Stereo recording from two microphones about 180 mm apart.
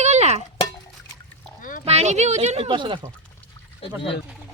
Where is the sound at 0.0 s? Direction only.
40° right (ahead or behind).